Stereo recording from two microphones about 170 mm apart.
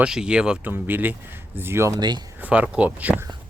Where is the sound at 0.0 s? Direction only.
5° right (ahead or behind); by 2.3 s 25° right (ahead or behind).